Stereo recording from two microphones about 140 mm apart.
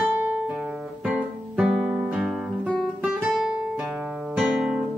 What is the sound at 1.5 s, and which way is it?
Guitar, 10° right (ahead or behind).